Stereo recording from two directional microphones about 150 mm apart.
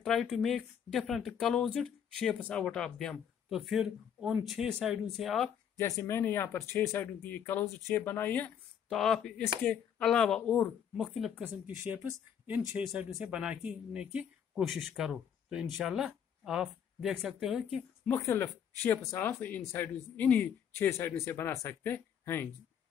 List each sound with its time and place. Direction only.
0.0 s speech: centre (ahead or behind)
5.8 s speech: 20° left (ahead or behind); by 17.8 s 5° right (ahead or behind)
18.0 s speech: 15° left (ahead or behind)